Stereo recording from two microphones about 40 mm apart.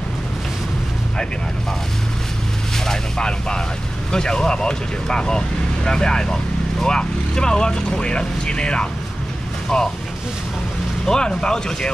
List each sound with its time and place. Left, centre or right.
3.2 s speech: left
11.1 s speech: centre